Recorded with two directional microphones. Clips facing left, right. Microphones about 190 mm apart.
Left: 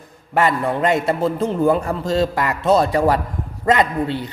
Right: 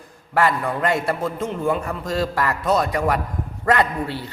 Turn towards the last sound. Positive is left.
turn(degrees=20)  # may be behind; listen again after turning